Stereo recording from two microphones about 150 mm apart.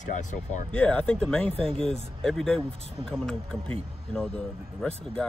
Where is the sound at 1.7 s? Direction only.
40° right (ahead or behind).